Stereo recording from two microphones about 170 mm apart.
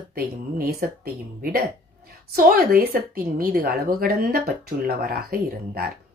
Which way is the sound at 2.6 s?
60° right (ahead or behind).